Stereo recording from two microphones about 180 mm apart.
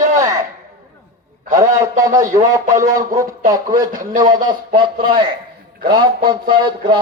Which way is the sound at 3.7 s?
50° right (ahead or behind).